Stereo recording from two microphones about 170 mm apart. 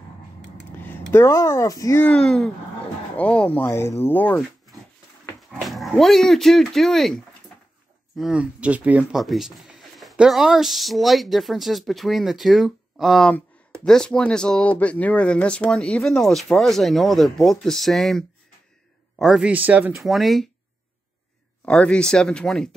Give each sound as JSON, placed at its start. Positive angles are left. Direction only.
{"t": 1.1, "sound": "speech", "side_deg": 15}
{"t": 5.6, "sound": "speech", "side_deg": 0}
{"t": 8.2, "sound": "speech", "side_deg": -5}
{"t": 21.6, "sound": "speech", "side_deg": 5}